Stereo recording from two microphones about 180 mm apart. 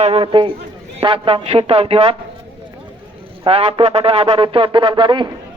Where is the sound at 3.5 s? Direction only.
30° right (ahead or behind).